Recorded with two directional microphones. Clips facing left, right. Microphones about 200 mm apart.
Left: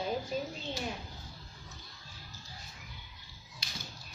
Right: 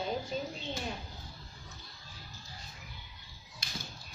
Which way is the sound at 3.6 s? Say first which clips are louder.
Right 4 dB; 50° right (ahead or behind).